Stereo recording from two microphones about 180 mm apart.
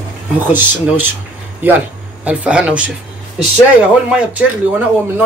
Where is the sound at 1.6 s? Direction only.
10° right (ahead or behind).